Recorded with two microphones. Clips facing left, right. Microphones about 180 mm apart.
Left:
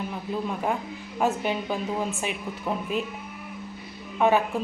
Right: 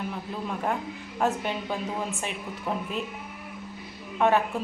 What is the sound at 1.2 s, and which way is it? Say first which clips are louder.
Speech: left 1 dB; 5° left (ahead or behind).